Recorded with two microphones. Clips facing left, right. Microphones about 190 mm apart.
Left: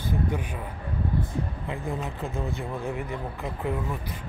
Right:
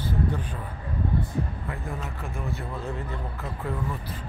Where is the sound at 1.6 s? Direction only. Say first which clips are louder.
Left 3 dB; 20° left (ahead or behind).